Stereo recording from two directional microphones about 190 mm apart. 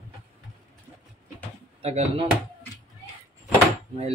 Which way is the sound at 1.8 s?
35° right (ahead or behind).